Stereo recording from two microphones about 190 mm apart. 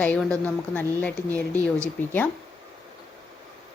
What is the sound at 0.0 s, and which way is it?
A woman's voice, 5° left (ahead or behind).